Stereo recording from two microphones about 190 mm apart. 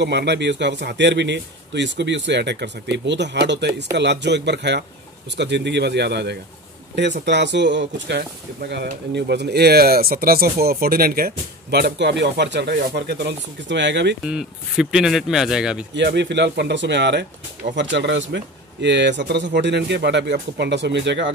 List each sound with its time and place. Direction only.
0.0 s speech: 60° right (ahead or behind)
14.2 s speech: centre (ahead or behind)
15.9 s speech: 65° right (ahead or behind)